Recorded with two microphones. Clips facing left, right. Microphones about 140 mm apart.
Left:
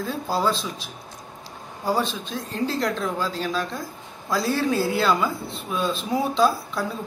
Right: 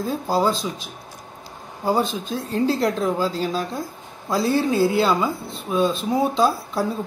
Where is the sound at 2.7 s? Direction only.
30° right (ahead or behind).